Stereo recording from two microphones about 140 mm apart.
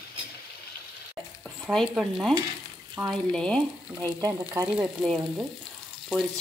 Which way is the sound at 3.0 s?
20° right (ahead or behind).